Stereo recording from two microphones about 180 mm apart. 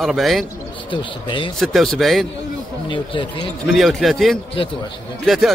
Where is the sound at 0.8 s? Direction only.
25° left (ahead or behind).